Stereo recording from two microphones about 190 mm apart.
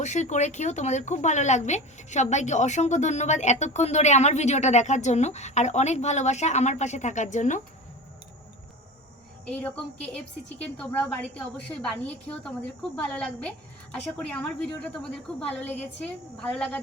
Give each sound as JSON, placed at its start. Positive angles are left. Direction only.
{"t": 0.0, "sound": "speech", "side_deg": 40}
{"t": 9.5, "sound": "a woman's voice", "side_deg": 10}